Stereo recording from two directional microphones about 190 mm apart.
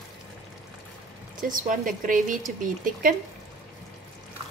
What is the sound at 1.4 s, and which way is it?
Speech, 45° right (ahead or behind).